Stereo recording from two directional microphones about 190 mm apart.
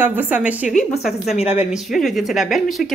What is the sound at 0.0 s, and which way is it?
Speech, 10° right (ahead or behind).